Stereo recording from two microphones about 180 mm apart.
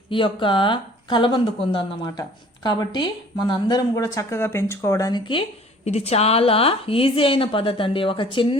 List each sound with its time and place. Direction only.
0.1 s speech: 30° left (ahead or behind)